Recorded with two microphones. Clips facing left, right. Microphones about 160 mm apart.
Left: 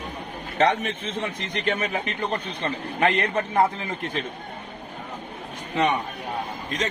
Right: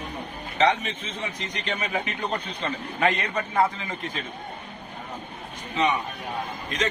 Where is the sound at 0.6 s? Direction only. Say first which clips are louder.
Left 1 dB; 55° left (ahead or behind).